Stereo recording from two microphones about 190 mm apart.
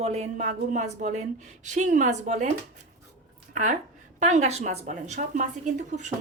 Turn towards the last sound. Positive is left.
turn(degrees=-40)  # may be behind; listen again after turning